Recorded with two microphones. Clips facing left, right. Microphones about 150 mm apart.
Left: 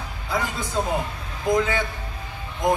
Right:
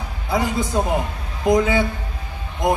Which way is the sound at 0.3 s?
15° right (ahead or behind).